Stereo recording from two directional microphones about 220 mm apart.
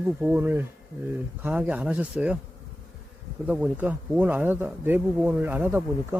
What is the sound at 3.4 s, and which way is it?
Speech, 5° right (ahead or behind).